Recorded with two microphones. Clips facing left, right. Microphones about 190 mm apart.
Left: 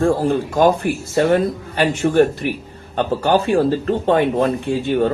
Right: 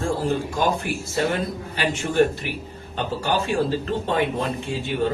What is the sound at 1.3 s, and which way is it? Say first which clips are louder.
A man's voice: left 9 dB; 55° left (ahead or behind).